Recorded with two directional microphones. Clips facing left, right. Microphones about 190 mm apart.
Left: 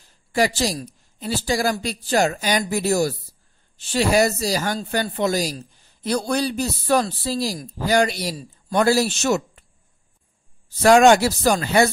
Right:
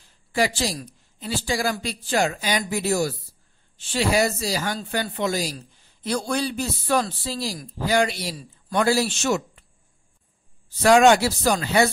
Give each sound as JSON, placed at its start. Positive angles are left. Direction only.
{"t": 0.3, "sound": "a man's voice", "side_deg": 40}
{"t": 10.8, "sound": "speech", "side_deg": 45}